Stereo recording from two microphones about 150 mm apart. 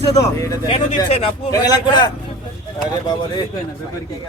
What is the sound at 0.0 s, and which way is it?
Speech, 25° left (ahead or behind).